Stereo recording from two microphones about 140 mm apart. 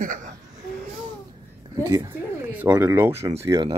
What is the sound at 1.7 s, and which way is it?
Speech, 25° right (ahead or behind).